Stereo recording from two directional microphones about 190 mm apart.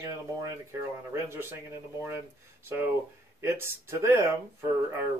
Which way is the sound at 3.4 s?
15° right (ahead or behind).